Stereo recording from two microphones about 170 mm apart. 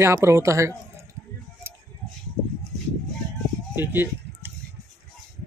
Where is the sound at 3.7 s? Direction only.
10° right (ahead or behind).